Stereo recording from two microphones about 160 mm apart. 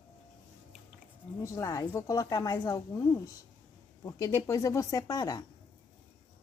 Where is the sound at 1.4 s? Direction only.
20° left (ahead or behind).